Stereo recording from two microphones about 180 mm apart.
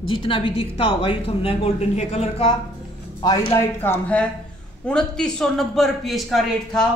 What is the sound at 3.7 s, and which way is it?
A man's voice, 10° left (ahead or behind).